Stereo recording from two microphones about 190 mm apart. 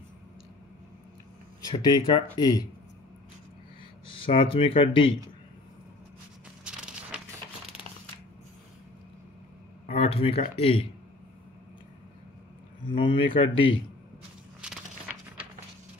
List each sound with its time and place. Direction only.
1.7 s speech: 20° left (ahead or behind)
4.2 s speech: 30° left (ahead or behind)
6.6 s a sound: 5° right (ahead or behind)
9.8 s speech: 30° left (ahead or behind)
12.9 s speech: 25° left (ahead or behind)
14.6 s a sound: 5° right (ahead or behind)